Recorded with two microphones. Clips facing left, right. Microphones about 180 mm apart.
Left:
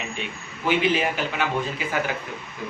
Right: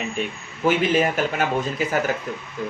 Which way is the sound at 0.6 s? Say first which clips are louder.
Right 3 dB; 45° right (ahead or behind).